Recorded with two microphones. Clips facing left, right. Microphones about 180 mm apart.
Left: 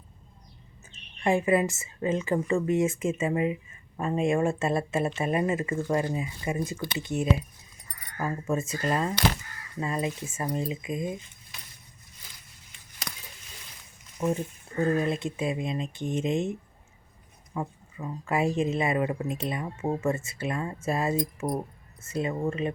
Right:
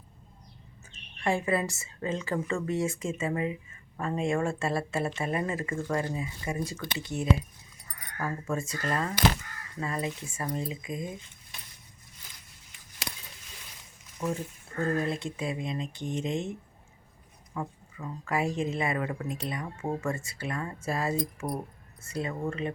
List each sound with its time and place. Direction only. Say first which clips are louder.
0.9 s a woman's voice: left 4 dB; 20° left (ahead or behind)
14.2 s a woman's voice: left 4 dB; 20° left (ahead or behind)